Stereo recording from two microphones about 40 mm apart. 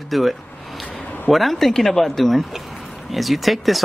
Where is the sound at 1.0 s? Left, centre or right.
Left.